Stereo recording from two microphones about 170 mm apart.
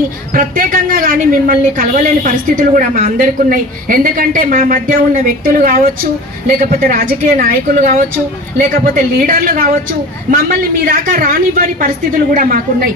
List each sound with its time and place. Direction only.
0.4 s a woman's voice: 55° right (ahead or behind)